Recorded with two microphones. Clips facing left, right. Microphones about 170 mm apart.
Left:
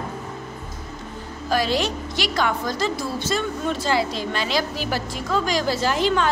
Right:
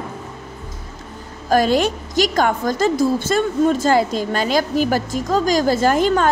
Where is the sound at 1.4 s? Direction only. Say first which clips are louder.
Right 6 dB; 50° right (ahead or behind).